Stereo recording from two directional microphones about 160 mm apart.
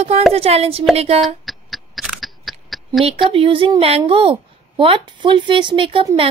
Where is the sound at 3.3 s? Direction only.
35° right (ahead or behind).